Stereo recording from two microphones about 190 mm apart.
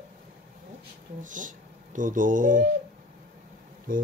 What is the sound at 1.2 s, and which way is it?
Speech, 45° right (ahead or behind).